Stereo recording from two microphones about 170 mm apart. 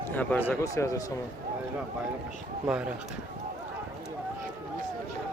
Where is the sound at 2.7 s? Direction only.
5° right (ahead or behind).